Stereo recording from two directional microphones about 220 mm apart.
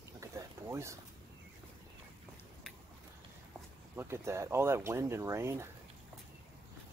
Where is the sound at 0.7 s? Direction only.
15° right (ahead or behind).